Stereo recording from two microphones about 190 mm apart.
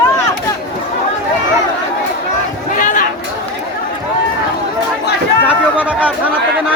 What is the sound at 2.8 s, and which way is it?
Chatter, 45° left (ahead or behind).